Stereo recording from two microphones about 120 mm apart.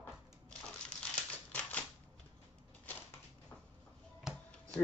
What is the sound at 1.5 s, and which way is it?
Typewriter, 15° left (ahead or behind).